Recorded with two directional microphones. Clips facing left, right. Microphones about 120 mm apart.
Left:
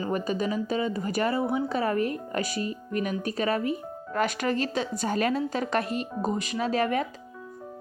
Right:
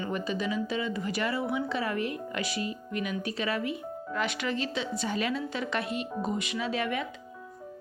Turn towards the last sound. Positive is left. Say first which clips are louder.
# left 5 dB
turn(degrees=40)  # may be behind; listen again after turning